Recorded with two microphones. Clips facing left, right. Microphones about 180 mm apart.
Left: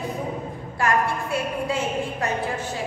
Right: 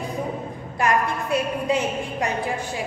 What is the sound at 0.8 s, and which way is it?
A woman's voice, 20° right (ahead or behind).